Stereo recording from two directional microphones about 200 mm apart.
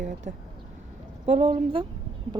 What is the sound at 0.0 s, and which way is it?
A woman's voice, 40° right (ahead or behind).